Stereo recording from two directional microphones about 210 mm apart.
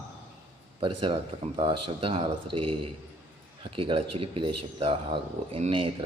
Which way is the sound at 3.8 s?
25° right (ahead or behind).